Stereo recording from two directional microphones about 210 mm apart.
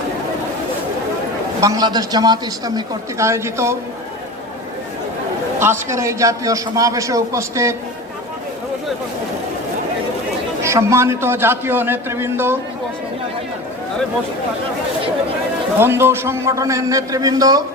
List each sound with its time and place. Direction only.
1.6 s a man's voice: 15° right (ahead or behind)
5.5 s a man's voice: 10° right (ahead or behind)
10.6 s a man's voice: 15° right (ahead or behind)
15.8 s a man's voice: 10° right (ahead or behind)